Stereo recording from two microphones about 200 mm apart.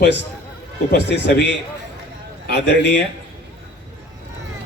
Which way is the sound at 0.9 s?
55° left (ahead or behind).